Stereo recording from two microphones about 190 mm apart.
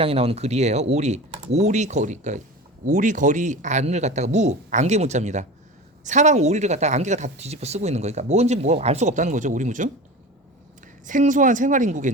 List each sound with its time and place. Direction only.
0.0 s speech: 30° right (ahead or behind)
11.0 s a woman's voice: 40° right (ahead or behind)